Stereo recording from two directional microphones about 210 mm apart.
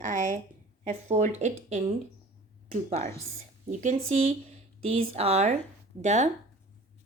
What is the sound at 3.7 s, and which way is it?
Speech, 35° right (ahead or behind).